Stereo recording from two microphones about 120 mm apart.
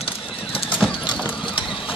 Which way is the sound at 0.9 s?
45° left (ahead or behind).